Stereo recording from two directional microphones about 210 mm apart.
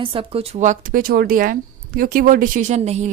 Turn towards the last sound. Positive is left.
turn(degrees=-30)  # may be behind; listen again after turning